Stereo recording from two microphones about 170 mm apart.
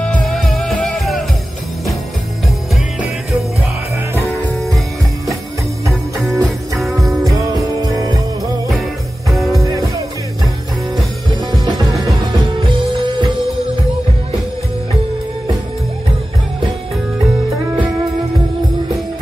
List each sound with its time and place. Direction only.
0.0 s music: 5° left (ahead or behind)
4.6 s music: centre (ahead or behind)
9.3 s music: centre (ahead or behind)
11.5 s music: 25° right (ahead or behind)